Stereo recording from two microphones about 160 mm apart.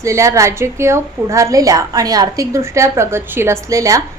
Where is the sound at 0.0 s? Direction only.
20° right (ahead or behind).